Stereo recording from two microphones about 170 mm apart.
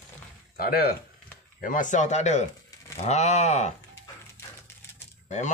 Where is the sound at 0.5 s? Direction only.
60° left (ahead or behind).